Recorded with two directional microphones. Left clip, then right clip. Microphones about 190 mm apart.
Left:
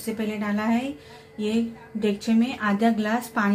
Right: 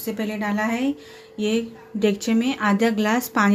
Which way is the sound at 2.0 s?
45° right (ahead or behind).